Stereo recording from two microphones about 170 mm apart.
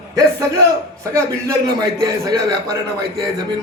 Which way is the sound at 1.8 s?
20° right (ahead or behind).